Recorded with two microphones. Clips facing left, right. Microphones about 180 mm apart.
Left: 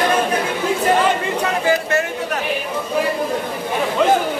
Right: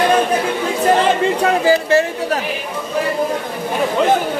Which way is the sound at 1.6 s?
30° right (ahead or behind).